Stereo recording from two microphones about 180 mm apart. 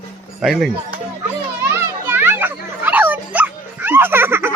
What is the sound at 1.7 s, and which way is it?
Children playing, 10° right (ahead or behind).